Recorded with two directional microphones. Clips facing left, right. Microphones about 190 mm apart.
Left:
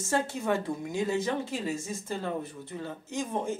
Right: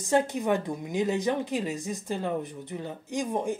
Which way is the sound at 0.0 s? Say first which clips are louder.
Right 4 dB; 15° right (ahead or behind).